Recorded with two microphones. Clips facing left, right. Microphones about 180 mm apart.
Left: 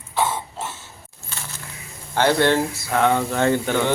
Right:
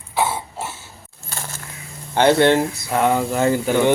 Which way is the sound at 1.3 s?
45° right (ahead or behind).